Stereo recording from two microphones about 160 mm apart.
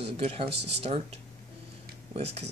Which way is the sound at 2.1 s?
40° right (ahead or behind).